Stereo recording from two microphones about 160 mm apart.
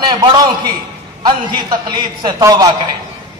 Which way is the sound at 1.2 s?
30° right (ahead or behind).